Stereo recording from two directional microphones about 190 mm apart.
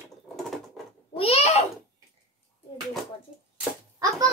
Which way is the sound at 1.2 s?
35° left (ahead or behind).